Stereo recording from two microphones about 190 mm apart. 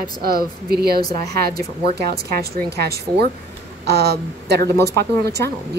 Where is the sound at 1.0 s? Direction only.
20° left (ahead or behind).